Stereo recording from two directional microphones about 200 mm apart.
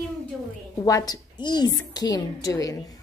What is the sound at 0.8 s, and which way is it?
A woman's voice, 20° left (ahead or behind).